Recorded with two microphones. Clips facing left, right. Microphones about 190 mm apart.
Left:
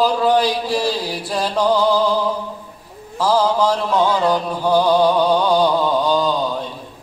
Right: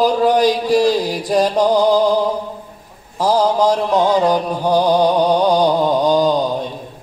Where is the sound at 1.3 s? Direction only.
40° right (ahead or behind).